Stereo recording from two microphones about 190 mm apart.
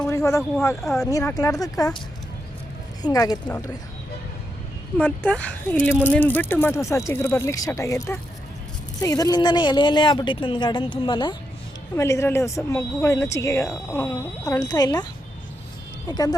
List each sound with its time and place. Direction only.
0.0 s a sound: 15° left (ahead or behind)
0.8 s speech: centre (ahead or behind)
1.1 s speech: 15° left (ahead or behind)
3.0 s speech: 20° left (ahead or behind)
4.9 s speech: 5° left (ahead or behind)
16.0 s speech: 20° left (ahead or behind)